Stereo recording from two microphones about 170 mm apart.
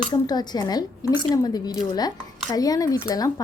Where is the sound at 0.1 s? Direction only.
25° left (ahead or behind).